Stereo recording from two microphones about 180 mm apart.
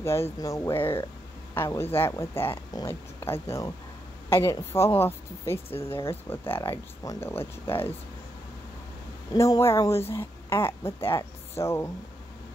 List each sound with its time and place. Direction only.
0.0 s speech: 15° left (ahead or behind)
9.3 s speech: 20° left (ahead or behind)